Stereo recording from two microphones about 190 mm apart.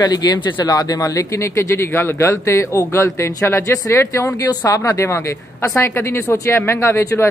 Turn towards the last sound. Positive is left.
turn(degrees=15)  # may be behind; listen again after turning